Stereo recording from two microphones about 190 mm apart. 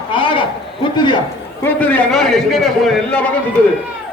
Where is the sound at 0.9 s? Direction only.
25° left (ahead or behind).